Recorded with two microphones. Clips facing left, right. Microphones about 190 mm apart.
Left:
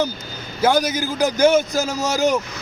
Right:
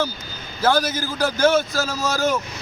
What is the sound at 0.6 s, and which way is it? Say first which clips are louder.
A man's voice: left 2 dB; 15° left (ahead or behind).